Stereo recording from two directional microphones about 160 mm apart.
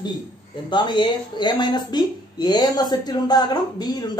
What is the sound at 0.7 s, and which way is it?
Speech, 30° left (ahead or behind).